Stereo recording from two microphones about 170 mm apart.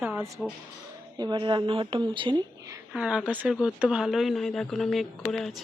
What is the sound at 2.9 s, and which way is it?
Speech, 5° right (ahead or behind).